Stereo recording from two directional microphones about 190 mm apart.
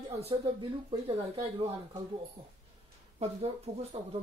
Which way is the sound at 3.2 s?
35° right (ahead or behind).